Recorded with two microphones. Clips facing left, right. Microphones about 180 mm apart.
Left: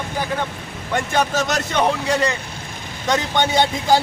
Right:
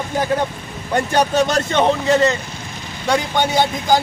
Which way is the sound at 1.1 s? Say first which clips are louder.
Right 4 dB; 30° right (ahead or behind).